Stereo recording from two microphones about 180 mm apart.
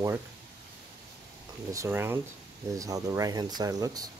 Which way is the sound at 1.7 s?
15° right (ahead or behind).